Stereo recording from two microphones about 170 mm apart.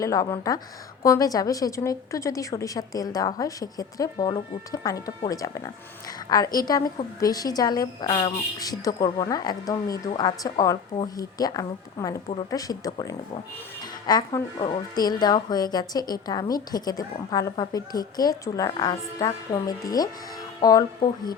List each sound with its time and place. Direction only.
0.0 s speech: 20° left (ahead or behind)